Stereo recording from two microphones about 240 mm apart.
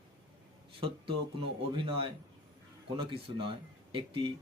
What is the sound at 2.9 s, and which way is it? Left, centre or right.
Speech, right.